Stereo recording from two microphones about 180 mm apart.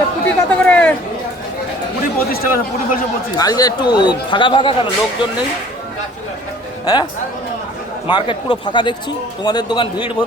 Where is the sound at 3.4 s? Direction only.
20° left (ahead or behind).